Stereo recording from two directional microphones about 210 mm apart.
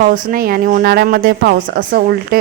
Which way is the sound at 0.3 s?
45° right (ahead or behind).